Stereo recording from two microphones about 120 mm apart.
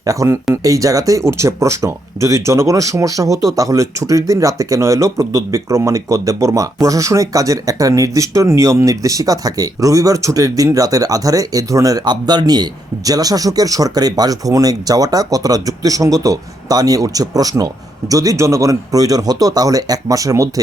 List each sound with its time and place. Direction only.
0.0 s speech: 25° right (ahead or behind)